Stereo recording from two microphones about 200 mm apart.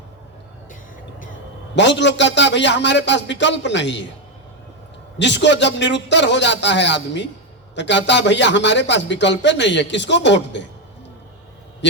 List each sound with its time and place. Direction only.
1.7 s speech: 60° left (ahead or behind)
5.2 s speech: 60° left (ahead or behind)